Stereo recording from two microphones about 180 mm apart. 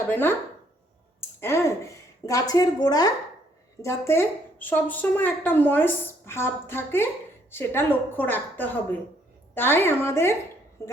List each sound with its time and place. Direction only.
0.1 s a woman's voice: 10° left (ahead or behind)
1.4 s a woman's voice: 15° left (ahead or behind)